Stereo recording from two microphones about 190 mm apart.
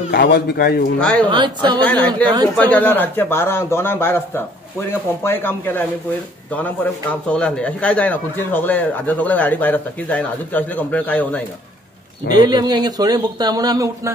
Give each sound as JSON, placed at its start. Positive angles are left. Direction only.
{"t": 0.1, "sound": "a man's voice", "side_deg": 55}
{"t": 1.3, "sound": "speech", "side_deg": -25}
{"t": 1.8, "sound": "a man's voice", "side_deg": 10}
{"t": 12.4, "sound": "speech", "side_deg": -20}